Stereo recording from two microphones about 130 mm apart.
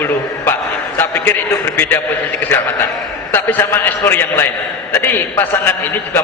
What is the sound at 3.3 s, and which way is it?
A man's voice, 15° left (ahead or behind).